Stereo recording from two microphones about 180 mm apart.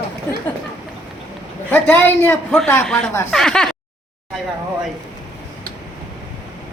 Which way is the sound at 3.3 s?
5° left (ahead or behind).